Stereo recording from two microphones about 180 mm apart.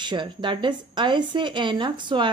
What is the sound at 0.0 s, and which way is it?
A woman's voice, 25° right (ahead or behind).